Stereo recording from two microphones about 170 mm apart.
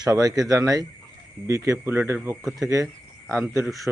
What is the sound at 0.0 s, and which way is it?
Speech, 20° right (ahead or behind).